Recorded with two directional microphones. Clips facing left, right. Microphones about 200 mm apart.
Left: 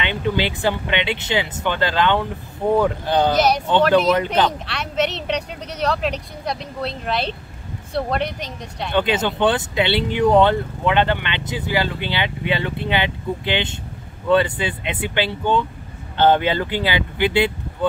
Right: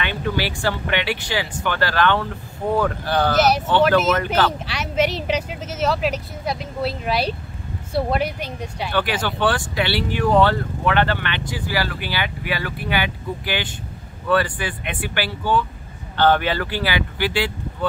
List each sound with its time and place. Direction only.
0.0 s speech: 20° left (ahead or behind)
3.3 s speech: 5° right (ahead or behind)
8.9 s speech: 20° left (ahead or behind)